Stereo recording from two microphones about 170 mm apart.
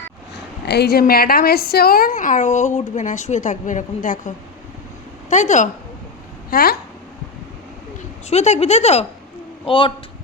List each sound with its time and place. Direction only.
0.7 s a woman's voice: 70° left (ahead or behind); by 4.3 s 50° left (ahead or behind)
5.3 s a woman's voice: 45° left (ahead or behind)
6.5 s speech: 65° left (ahead or behind)
8.3 s a man's voice: 40° left (ahead or behind)